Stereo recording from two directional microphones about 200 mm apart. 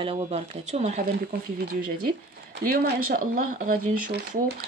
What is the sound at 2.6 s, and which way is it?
Speech, 45° right (ahead or behind).